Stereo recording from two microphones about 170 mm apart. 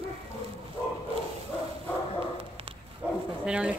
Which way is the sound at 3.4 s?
5° right (ahead or behind).